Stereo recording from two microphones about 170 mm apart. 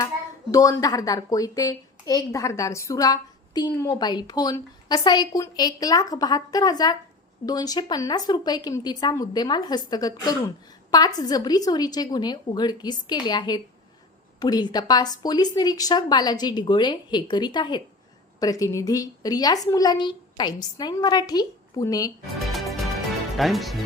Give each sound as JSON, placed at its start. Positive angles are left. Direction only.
{"t": 0.5, "sound": "a woman's voice", "side_deg": 20}
{"t": 22.5, "sound": "music", "side_deg": 0}
{"t": 23.4, "sound": "speech", "side_deg": 0}